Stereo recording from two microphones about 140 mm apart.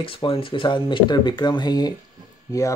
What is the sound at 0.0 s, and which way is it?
Speech, 40° left (ahead or behind).